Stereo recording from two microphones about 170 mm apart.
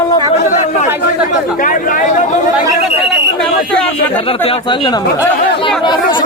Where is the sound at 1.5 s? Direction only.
50° left (ahead or behind).